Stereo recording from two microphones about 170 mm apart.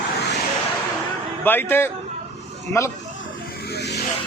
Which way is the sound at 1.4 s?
10° left (ahead or behind).